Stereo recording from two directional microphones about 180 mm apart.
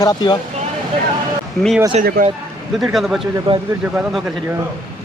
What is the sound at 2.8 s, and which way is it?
Speech, centre (ahead or behind).